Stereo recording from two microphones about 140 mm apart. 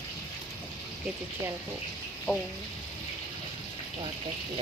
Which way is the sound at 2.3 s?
10° left (ahead or behind).